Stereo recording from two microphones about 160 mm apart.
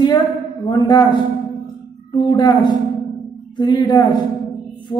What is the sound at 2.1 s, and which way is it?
A man's voice, 30° left (ahead or behind).